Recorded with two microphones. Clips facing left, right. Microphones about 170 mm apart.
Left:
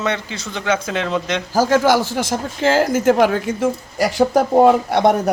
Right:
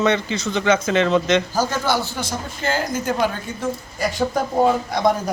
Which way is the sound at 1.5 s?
90° left.